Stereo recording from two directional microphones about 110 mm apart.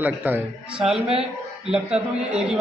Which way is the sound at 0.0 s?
15° right (ahead or behind).